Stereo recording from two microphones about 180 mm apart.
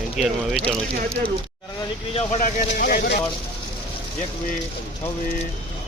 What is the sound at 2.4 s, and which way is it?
Speech, 50° left (ahead or behind).